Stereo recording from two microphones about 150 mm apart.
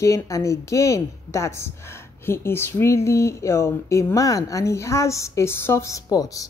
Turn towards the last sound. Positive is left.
turn(degrees=25)  # may be behind; listen again after turning